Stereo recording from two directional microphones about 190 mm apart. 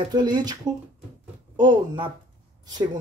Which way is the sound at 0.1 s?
20° right (ahead or behind).